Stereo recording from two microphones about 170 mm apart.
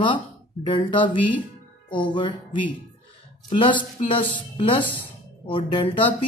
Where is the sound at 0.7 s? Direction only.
30° left (ahead or behind).